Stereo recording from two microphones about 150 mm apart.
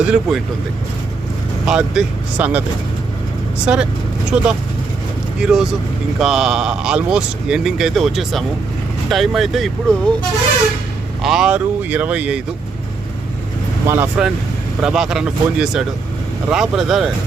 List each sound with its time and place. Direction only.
0.0 s speech: 5° right (ahead or behind)
1.6 s speech: 5° right (ahead or behind)
3.7 s speech: 5° right (ahead or behind)
11.2 s speech: 5° right (ahead or behind)
13.8 s speech: 15° right (ahead or behind)
14.8 s speech: 5° right (ahead or behind)